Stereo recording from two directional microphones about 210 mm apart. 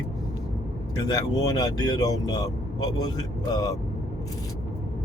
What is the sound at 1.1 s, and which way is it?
Speech, 20° left (ahead or behind).